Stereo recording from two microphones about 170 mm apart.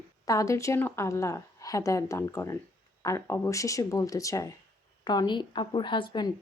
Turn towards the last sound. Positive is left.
turn(degrees=25)  # may be behind; listen again after turning